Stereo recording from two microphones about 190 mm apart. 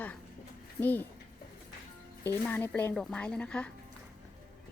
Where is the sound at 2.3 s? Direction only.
10° left (ahead or behind).